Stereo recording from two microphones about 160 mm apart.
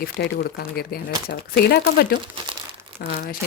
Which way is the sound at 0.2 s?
80° left.